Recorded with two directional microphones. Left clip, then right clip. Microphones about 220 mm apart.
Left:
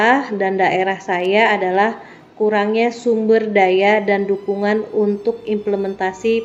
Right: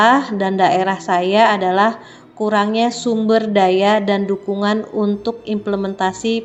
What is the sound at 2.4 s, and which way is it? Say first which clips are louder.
A woman's voice: even; 15° right (ahead or behind).